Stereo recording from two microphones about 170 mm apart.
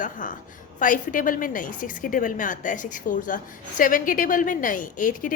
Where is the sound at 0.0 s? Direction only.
50° left (ahead or behind).